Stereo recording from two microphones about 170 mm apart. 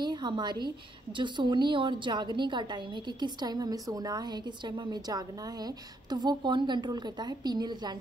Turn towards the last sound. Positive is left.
turn(degrees=-25)  # may be behind; listen again after turning